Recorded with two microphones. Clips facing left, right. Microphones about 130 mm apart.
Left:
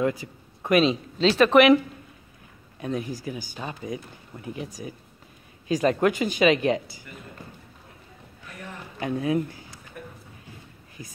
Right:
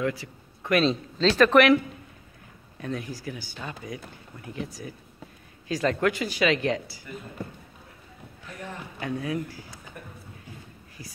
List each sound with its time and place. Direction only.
0.7 s speech: 10° left (ahead or behind)
2.8 s speech: 20° left (ahead or behind)
9.0 s speech: 20° left (ahead or behind)
11.0 s speech: 20° left (ahead or behind)